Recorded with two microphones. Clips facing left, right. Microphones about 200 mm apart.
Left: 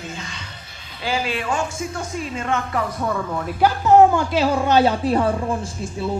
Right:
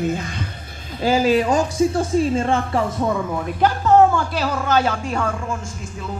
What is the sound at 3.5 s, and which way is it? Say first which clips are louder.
Speech: left 1 dB; 10° left (ahead or behind).